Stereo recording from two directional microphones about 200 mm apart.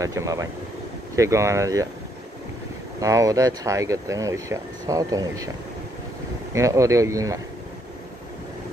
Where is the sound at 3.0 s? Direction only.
15° right (ahead or behind).